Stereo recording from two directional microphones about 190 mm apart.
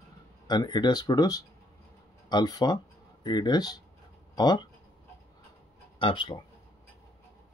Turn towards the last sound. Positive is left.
turn(degrees=25)  # may be behind; listen again after turning